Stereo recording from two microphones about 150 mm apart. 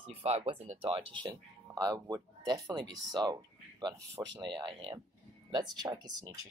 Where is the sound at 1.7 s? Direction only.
25° right (ahead or behind).